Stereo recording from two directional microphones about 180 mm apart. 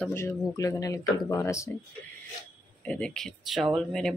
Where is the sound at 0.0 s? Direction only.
10° left (ahead or behind).